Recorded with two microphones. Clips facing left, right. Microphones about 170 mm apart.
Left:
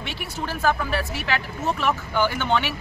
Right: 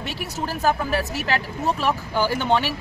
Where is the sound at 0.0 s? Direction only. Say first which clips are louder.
Right 2 dB; 40° right (ahead or behind).